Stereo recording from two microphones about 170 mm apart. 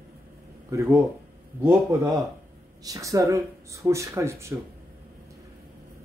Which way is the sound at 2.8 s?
20° right (ahead or behind).